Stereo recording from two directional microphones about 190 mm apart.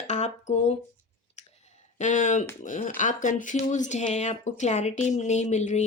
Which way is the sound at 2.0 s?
40° left (ahead or behind).